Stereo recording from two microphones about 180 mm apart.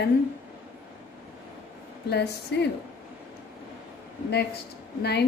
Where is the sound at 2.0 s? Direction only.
70° left (ahead or behind).